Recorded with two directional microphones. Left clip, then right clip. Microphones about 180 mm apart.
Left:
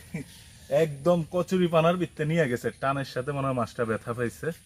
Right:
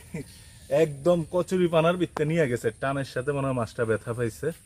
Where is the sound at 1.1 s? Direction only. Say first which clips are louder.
Right 1 dB; 15° right (ahead or behind).